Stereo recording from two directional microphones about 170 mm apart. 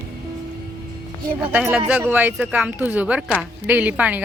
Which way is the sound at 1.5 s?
10° right (ahead or behind).